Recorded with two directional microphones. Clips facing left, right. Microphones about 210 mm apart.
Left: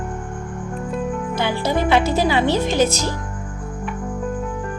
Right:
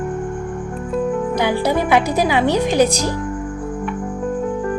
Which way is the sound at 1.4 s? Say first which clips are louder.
Right 1 dB; 15° right (ahead or behind).